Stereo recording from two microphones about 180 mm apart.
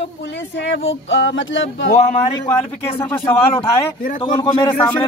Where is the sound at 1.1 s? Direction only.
90° left.